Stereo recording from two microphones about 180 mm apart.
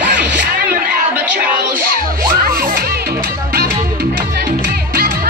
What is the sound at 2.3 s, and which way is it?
Crowd, 55° right (ahead or behind).